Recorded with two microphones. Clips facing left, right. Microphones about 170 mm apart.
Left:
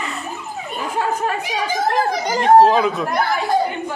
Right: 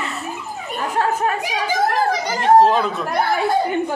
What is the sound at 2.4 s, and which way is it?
Speech, centre (ahead or behind).